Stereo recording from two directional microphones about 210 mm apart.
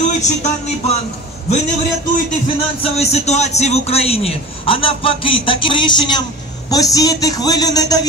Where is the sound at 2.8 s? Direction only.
30° left (ahead or behind).